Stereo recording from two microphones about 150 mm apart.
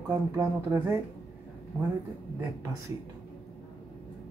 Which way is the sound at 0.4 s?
15° right (ahead or behind).